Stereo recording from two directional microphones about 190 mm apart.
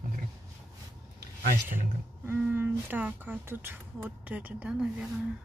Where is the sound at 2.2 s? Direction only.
10° right (ahead or behind).